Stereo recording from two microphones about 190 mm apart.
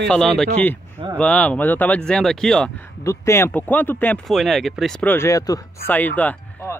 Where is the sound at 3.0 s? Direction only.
15° left (ahead or behind).